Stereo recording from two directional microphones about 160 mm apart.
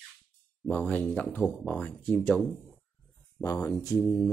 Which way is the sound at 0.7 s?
10° left (ahead or behind).